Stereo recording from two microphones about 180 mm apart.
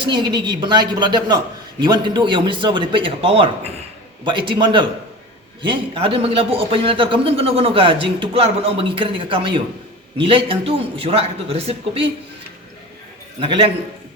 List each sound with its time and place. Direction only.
0.0 s a man's voice: 25° right (ahead or behind)
13.4 s speech: 30° right (ahead or behind)